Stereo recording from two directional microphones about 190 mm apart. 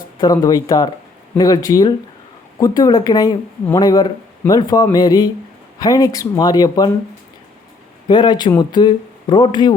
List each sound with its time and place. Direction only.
0.2 s speech: 20° left (ahead or behind)
8.0 s speech: 25° left (ahead or behind)